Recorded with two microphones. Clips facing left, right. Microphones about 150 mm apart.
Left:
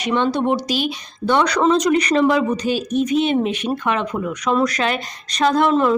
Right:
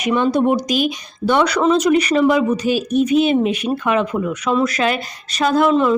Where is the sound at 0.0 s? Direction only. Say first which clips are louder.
Right 3 dB; 10° right (ahead or behind).